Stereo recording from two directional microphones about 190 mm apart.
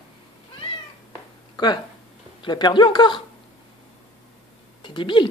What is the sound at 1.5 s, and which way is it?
A man's voice, 25° left (ahead or behind).